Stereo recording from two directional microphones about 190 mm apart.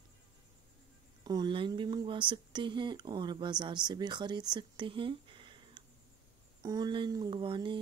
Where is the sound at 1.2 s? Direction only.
20° right (ahead or behind).